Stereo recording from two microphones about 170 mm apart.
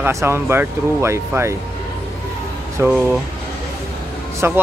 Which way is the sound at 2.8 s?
15° right (ahead or behind).